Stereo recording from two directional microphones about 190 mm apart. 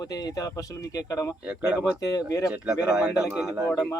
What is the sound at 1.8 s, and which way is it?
Speech, 20° left (ahead or behind).